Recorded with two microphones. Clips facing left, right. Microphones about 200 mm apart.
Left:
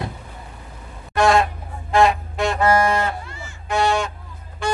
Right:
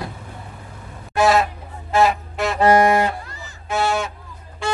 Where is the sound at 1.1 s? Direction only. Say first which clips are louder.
Even; 5° right (ahead or behind).